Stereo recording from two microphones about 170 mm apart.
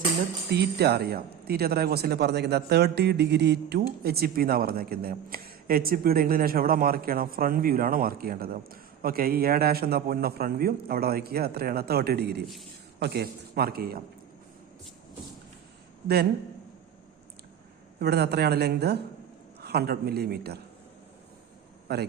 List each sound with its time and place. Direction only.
0.5 s a woman's voice: 75° right (ahead or behind)
18.0 s a woman's voice: 70° right (ahead or behind)
21.9 s a woman's voice: 70° right (ahead or behind)